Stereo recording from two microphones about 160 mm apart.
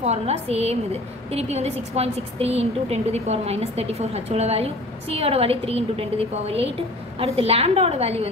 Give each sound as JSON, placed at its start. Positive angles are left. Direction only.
{"t": 0.0, "sound": "a woman's voice", "side_deg": -40}